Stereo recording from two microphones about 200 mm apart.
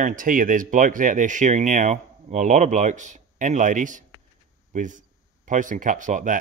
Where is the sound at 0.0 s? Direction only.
45° right (ahead or behind).